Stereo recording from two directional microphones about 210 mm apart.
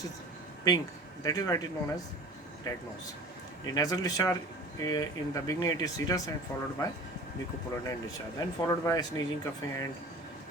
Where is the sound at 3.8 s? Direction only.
15° left (ahead or behind).